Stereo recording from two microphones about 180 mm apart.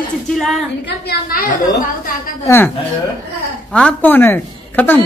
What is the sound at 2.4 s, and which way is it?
A man's voice, 10° left (ahead or behind).